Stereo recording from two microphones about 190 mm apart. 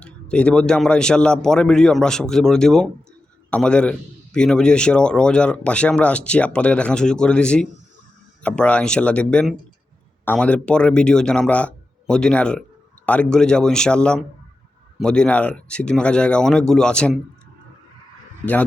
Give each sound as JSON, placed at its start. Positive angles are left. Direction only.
{"t": 0.0, "sound": "a man's voice", "side_deg": 5}